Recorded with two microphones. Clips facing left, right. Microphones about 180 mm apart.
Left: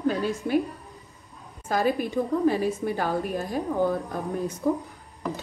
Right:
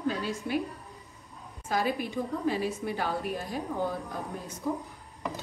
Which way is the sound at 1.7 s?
50° left (ahead or behind).